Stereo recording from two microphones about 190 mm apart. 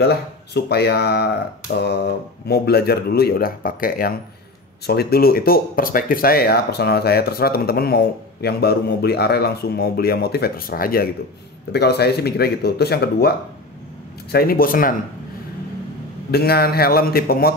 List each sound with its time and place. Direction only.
0.0 s speech: 60° left (ahead or behind)
14.3 s a man's voice: 50° left (ahead or behind)
16.3 s a man's voice: 55° left (ahead or behind)